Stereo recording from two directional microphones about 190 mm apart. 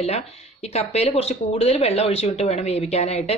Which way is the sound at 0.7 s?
35° left (ahead or behind).